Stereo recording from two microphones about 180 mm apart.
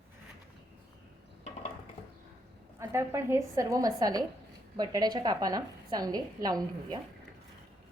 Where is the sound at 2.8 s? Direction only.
15° right (ahead or behind).